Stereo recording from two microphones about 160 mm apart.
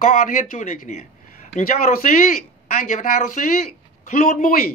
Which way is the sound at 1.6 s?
60° left (ahead or behind).